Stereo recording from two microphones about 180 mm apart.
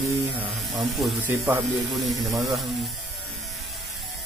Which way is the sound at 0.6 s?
Centre (ahead or behind).